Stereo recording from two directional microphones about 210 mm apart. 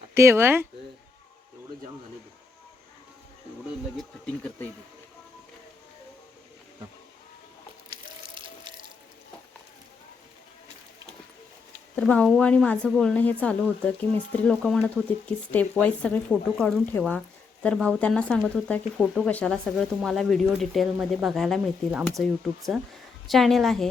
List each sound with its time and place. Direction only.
0.2 s speech: 10° right (ahead or behind)
8.4 s water: 25° right (ahead or behind)
11.9 s speech: 5° left (ahead or behind)